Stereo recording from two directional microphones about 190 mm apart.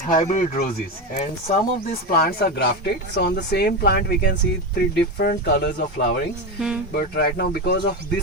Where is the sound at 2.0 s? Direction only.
55° left (ahead or behind).